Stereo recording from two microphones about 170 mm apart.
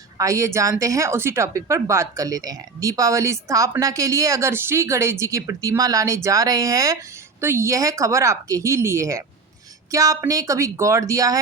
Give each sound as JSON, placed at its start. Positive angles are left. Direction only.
{"t": 0.2, "sound": "a woman's voice", "side_deg": -20}